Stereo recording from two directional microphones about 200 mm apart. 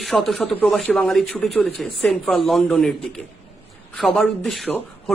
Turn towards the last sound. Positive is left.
turn(degrees=5)  # may be behind; listen again after turning